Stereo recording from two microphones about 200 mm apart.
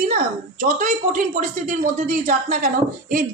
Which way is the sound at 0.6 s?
45° right (ahead or behind).